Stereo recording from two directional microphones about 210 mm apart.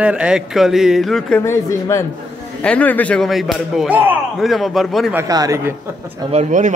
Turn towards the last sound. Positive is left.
turn(degrees=-35)  # may be behind; listen again after turning